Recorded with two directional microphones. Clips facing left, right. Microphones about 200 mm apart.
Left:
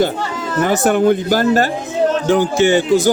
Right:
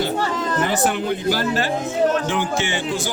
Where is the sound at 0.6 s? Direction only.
45° left (ahead or behind).